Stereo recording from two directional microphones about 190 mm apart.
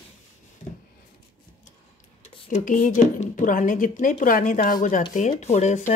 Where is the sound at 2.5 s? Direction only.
45° left (ahead or behind).